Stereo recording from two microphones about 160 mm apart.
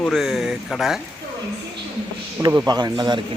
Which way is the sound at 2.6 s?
25° right (ahead or behind).